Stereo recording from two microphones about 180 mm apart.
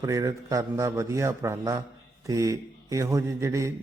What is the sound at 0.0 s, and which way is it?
Mantra, 20° right (ahead or behind).